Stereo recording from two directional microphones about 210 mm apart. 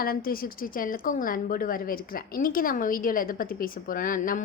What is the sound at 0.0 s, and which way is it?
A woman's voice, 45° left (ahead or behind).